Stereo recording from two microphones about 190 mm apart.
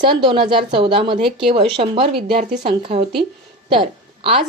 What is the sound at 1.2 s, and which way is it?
Speech, centre (ahead or behind).